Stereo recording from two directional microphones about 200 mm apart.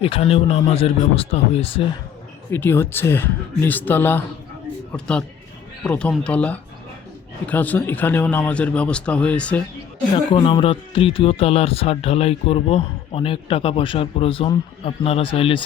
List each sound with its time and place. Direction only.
0.0 s speech: 30° left (ahead or behind)
2.5 s speech: 10° left (ahead or behind)
10.3 s speech: 25° left (ahead or behind)